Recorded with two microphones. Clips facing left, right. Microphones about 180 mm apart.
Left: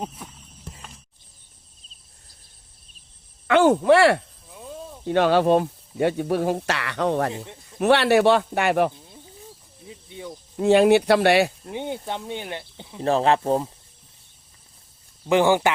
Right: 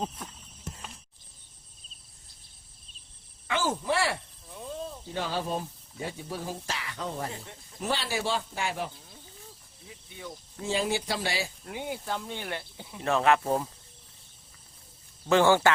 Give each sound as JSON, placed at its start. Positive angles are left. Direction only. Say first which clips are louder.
{"t": 3.4, "sound": "speech", "louder": "left 13 dB", "side_deg": 65}
{"t": 4.4, "sound": "snake", "louder": "left 1 dB", "side_deg": 5}
{"t": 5.0, "sound": "speech", "louder": "left 15 dB", "side_deg": 75}
{"t": 9.9, "sound": "a sound", "louder": "left 7 dB", "side_deg": 25}
{"t": 10.6, "sound": "speech", "louder": "left 14 dB", "side_deg": 65}
{"t": 11.6, "sound": "speech", "louder": "left 6 dB", "side_deg": 25}
{"t": 13.0, "sound": "speech", "louder": "left 4 dB", "side_deg": 35}
{"t": 15.3, "sound": "speech", "louder": "left 3 dB", "side_deg": 15}